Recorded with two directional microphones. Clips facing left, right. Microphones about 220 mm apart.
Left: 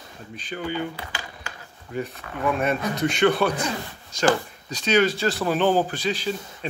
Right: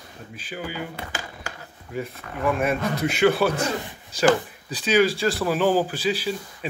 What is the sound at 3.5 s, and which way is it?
Speech, 30° right (ahead or behind).